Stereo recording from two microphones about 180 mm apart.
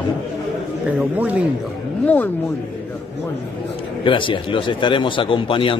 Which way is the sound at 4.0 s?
30° left (ahead or behind).